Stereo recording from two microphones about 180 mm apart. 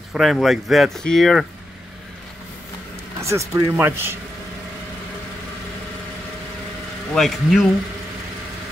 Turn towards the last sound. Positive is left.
turn(degrees=0)  # may be behind; listen again after turning